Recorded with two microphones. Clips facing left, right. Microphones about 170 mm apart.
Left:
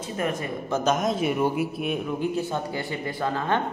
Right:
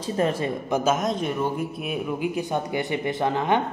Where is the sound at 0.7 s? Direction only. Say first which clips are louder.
Right 1 dB; 10° right (ahead or behind).